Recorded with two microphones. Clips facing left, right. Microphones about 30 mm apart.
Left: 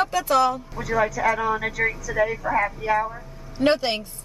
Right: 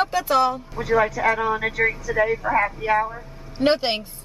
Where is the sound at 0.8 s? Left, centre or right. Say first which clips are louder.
Right 3 dB; right.